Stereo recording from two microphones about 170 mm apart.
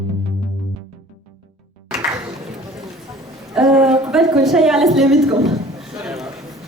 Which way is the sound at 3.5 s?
5° right (ahead or behind).